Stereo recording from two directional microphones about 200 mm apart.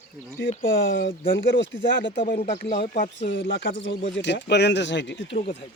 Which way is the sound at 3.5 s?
65° left (ahead or behind).